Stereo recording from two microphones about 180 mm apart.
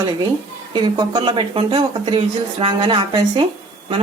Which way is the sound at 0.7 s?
25° right (ahead or behind).